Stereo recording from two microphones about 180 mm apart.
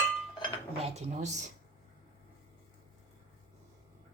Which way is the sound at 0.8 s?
35° right (ahead or behind).